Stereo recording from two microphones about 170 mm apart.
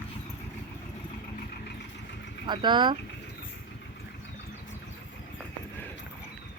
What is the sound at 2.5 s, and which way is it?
Speech, 25° right (ahead or behind).